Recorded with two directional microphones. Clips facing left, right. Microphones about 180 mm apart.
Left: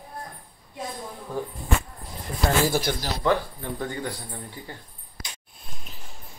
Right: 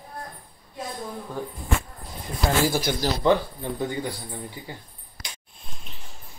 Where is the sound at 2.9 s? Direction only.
10° right (ahead or behind).